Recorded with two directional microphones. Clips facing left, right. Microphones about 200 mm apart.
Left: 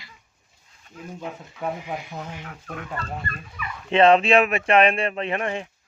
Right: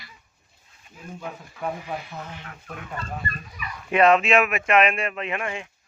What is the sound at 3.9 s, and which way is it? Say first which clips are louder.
Speech: left 2 dB; 30° left (ahead or behind).